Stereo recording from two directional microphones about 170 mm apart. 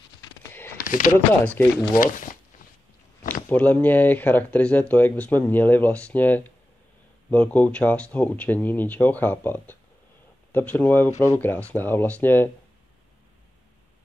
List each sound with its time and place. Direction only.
0.4 s a sound: 10° left (ahead or behind)
0.8 s speech: 55° left (ahead or behind)
1.6 s speech: 10° left (ahead or behind)
2.0 s speech: 50° left (ahead or behind)
3.4 s speech: 10° left (ahead or behind)